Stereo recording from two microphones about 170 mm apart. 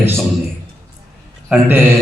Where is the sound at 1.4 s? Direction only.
10° right (ahead or behind).